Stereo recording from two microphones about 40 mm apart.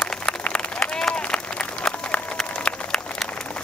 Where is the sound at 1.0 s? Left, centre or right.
Left.